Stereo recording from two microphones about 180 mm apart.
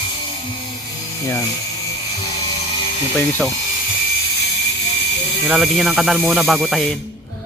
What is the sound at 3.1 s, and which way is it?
Speech, 10° left (ahead or behind).